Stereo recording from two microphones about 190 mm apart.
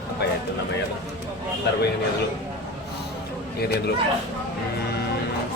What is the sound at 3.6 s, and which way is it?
Speech, 60° left (ahead or behind).